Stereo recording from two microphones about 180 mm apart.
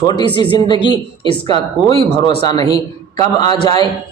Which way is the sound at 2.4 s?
20° left (ahead or behind).